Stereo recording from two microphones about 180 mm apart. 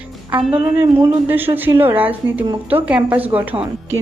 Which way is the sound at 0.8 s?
10° right (ahead or behind).